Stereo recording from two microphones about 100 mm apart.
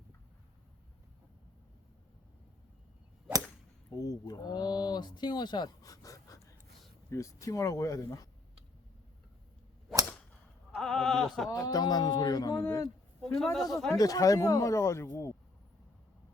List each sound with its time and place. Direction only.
4.0 s a man's voice: 35° left (ahead or behind)
10.8 s sheep: 5° left (ahead or behind)
11.4 s a man's voice: 40° left (ahead or behind)
13.2 s sheep: 5° left (ahead or behind)
13.9 s a man's voice: 35° left (ahead or behind)